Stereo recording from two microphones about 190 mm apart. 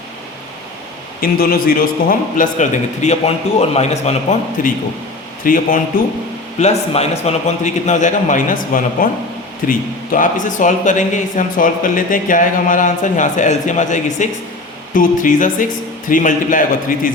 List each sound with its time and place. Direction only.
1.2 s a man's voice: 50° left (ahead or behind)
6.6 s a man's voice: 35° left (ahead or behind)